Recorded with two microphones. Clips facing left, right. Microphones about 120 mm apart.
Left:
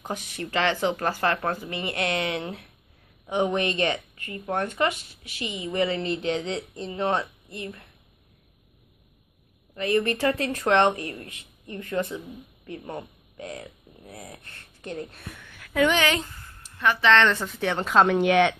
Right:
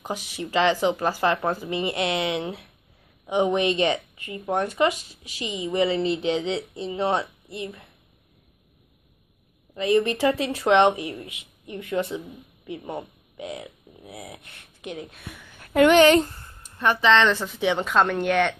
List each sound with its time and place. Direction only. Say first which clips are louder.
0.4 s a woman's voice: right 4 dB; 15° right (ahead or behind)
9.8 s a woman's voice: right 3 dB; 20° right (ahead or behind)
15.0 s a woman's voice: right 1 dB; centre (ahead or behind)
15.7 s speech: right 6 dB; 60° right (ahead or behind)
16.0 s speech: right 10 dB; 40° right (ahead or behind)
16.4 s a sound: right 1 dB; 25° right (ahead or behind)
17.2 s a woman's voice: right 1 dB; centre (ahead or behind)